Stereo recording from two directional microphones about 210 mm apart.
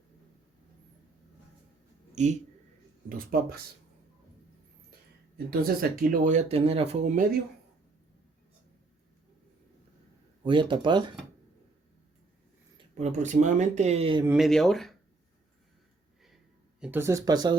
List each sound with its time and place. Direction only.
2.1 s speech: 35° right (ahead or behind)
5.5 s speech: 45° right (ahead or behind)
10.4 s speech: 25° right (ahead or behind)
12.7 s speech: 30° right (ahead or behind)
14.3 s speech: centre (ahead or behind)
16.8 s speech: 10° right (ahead or behind)